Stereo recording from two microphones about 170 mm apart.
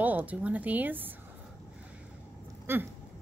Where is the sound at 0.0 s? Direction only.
10° right (ahead or behind).